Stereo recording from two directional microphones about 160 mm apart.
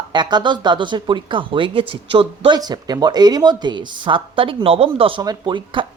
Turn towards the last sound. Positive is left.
turn(degrees=-30)  # may be behind; listen again after turning